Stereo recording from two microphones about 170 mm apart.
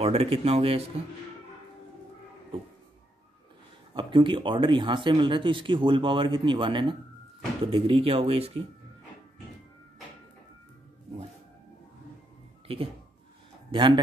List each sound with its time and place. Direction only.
0.0 s speech: 35° right (ahead or behind)
3.9 s speech: 30° right (ahead or behind)
12.7 s speech: 35° right (ahead or behind)